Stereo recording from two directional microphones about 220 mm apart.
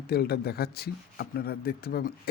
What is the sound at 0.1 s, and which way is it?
Speech, 45° left (ahead or behind).